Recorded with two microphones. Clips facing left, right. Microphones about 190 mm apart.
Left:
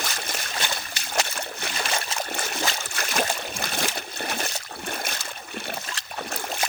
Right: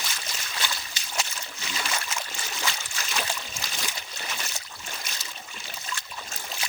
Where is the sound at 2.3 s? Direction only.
60° left (ahead or behind).